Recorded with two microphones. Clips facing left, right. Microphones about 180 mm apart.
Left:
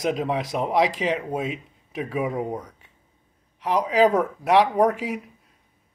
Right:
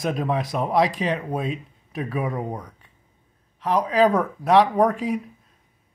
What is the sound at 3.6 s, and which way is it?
Speech, 20° left (ahead or behind).